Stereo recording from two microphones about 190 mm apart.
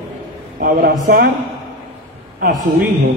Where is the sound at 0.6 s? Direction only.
50° right (ahead or behind).